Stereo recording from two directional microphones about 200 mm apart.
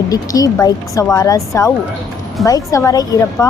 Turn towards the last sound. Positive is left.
turn(degrees=15)  # may be behind; listen again after turning